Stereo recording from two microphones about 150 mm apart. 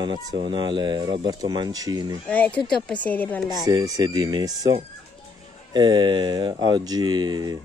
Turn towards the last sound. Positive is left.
turn(degrees=-25)  # may be behind; listen again after turning